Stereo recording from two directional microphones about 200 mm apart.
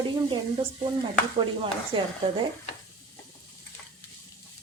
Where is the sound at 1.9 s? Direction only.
25° right (ahead or behind).